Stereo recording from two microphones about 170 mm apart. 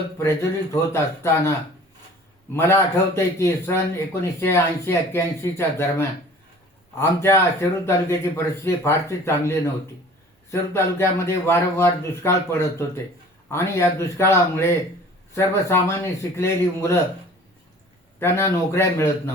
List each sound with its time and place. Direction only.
0.2 s a man's voice: 15° left (ahead or behind)
2.5 s a man's voice: 15° left (ahead or behind)
18.2 s a man's voice: 15° left (ahead or behind)